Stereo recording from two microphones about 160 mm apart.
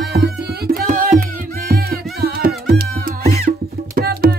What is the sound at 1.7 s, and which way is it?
Music, 70° right (ahead or behind).